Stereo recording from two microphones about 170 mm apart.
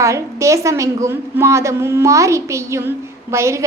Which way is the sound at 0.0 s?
15° right (ahead or behind).